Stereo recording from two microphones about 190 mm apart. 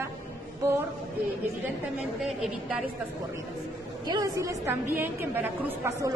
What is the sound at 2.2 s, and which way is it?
Speech, centre (ahead or behind).